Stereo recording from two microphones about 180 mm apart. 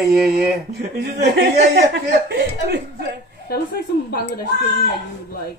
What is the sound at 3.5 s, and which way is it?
Speech, 65° left (ahead or behind).